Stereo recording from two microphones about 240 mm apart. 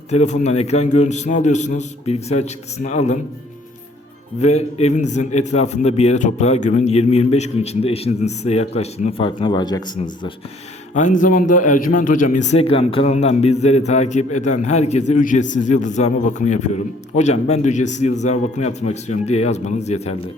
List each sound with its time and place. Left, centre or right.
0.1 s a man's voice: left
4.4 s a man's voice: left
10.9 s a man's voice: left